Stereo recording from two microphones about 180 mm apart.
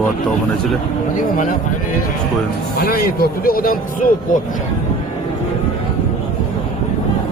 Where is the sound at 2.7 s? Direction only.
55° left (ahead or behind).